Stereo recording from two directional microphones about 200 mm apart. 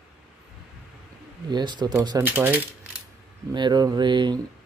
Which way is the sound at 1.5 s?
20° right (ahead or behind).